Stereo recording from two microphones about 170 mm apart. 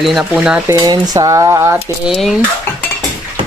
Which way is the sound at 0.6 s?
20° right (ahead or behind).